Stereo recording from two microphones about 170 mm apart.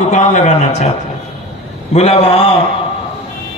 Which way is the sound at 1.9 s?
35° left (ahead or behind).